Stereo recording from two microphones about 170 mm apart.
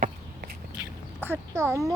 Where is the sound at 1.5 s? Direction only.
20° right (ahead or behind).